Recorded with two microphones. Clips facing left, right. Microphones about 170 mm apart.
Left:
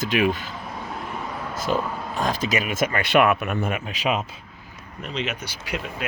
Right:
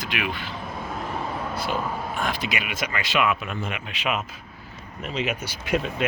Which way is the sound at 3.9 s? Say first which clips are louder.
Left 2 dB; 35° left (ahead or behind).